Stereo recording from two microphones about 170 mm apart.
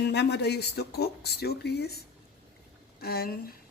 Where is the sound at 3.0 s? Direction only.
65° left (ahead or behind).